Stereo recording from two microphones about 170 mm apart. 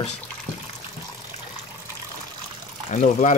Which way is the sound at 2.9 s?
45° left (ahead or behind).